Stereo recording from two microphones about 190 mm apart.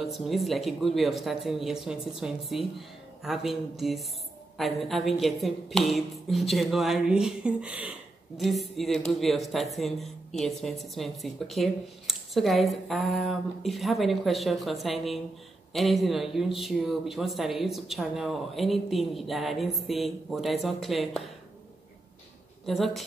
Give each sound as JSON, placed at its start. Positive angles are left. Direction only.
{"t": 0.0, "sound": "speech", "side_deg": 0}
{"t": 22.7, "sound": "speech", "side_deg": 0}